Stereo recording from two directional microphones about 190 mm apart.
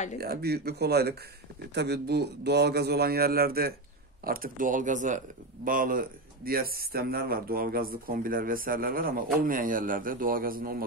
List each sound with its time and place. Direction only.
0.2 s a man's voice: 55° right (ahead or behind)